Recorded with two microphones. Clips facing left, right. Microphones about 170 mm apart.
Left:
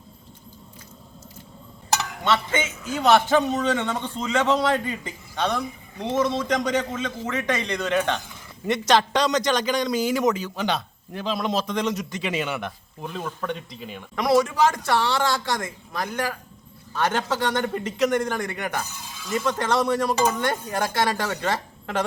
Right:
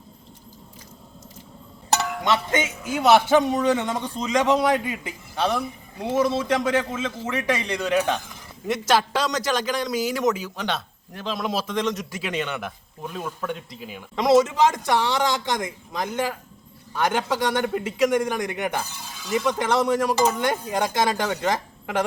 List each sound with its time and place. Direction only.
2.2 s a man's voice: 15° right (ahead or behind)
14.2 s a man's voice: 20° right (ahead or behind)